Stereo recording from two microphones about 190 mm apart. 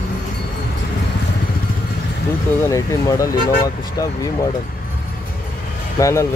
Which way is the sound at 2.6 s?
15° left (ahead or behind).